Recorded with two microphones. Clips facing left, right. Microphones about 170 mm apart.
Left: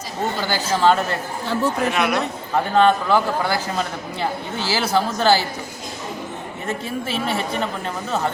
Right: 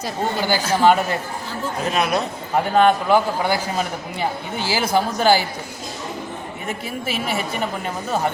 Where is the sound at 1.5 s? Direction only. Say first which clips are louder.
Left 6 dB; 70° left (ahead or behind).